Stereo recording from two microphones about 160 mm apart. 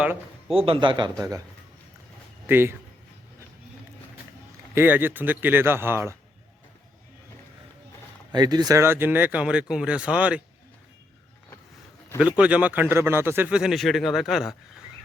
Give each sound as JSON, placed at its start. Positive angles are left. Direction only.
{"t": 0.0, "sound": "a sound", "side_deg": -5}
{"t": 0.5, "sound": "a man's voice", "side_deg": -35}
{"t": 2.5, "sound": "speech", "side_deg": -15}
{"t": 4.7, "sound": "speech", "side_deg": -15}
{"t": 8.3, "sound": "speech", "side_deg": -25}
{"t": 12.4, "sound": "speech", "side_deg": -10}